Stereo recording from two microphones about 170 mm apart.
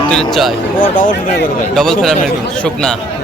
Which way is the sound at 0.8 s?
50° left (ahead or behind).